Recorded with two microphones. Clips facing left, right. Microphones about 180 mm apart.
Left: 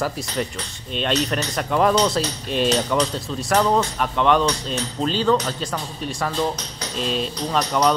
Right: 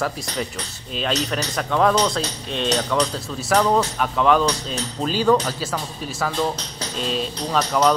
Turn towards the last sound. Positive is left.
turn(degrees=0)  # may be behind; listen again after turning